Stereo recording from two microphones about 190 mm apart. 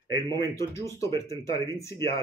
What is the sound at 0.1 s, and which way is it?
Speech, 15° left (ahead or behind).